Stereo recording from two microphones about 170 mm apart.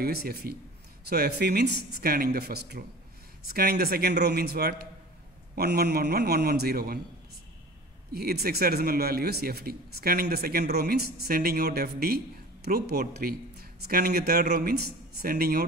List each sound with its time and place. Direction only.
0.0 s a man's voice: 65° right (ahead or behind)
8.1 s a man's voice: 65° right (ahead or behind)